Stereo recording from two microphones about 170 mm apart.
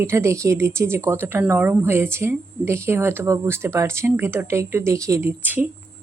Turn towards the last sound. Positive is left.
turn(degrees=-10)  # may be behind; listen again after turning